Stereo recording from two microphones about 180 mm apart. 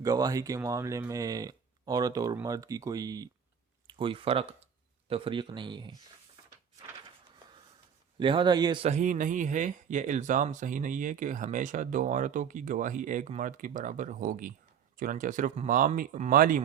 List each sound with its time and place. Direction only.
0.0 s speech: 20° right (ahead or behind)
8.2 s speech: 25° right (ahead or behind)
8.9 s speech: 45° right (ahead or behind)